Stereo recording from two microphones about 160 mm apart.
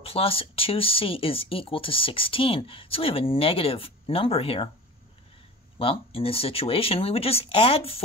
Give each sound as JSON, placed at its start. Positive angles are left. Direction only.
{"t": 0.0, "sound": "speech", "side_deg": 35}
{"t": 5.8, "sound": "speech", "side_deg": 35}